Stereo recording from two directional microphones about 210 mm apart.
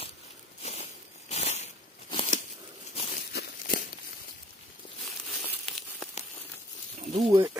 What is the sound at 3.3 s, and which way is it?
Crumpling, 45° left (ahead or behind).